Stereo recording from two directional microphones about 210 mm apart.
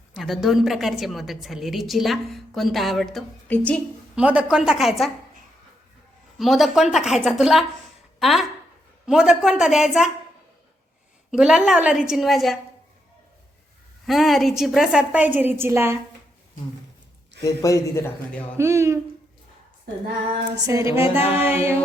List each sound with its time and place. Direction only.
0.1 s a woman's voice: centre (ahead or behind)
4.1 s a woman's voice: 5° right (ahead or behind)
6.4 s a woman's voice: centre (ahead or behind)
11.3 s a woman's voice: 5° right (ahead or behind)
14.1 s a woman's voice: centre (ahead or behind)
17.4 s a man's voice: 15° left (ahead or behind)
18.5 s speech: 15° right (ahead or behind)
20.6 s speech: 15° right (ahead or behind)
21.2 s music: 30° left (ahead or behind)
21.5 s speech: 10° right (ahead or behind)